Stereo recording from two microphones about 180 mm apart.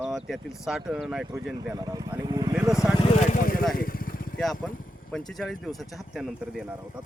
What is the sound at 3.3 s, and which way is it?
Vehicle, 50° left (ahead or behind).